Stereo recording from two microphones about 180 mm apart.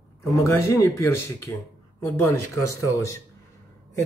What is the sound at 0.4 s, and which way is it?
Speech, 15° left (ahead or behind).